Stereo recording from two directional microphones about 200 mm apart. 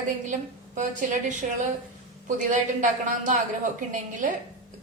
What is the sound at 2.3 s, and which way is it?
A woman's voice, 40° right (ahead or behind).